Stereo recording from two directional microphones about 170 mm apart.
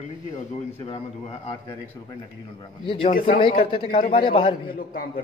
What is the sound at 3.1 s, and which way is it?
Speech, 55° left (ahead or behind).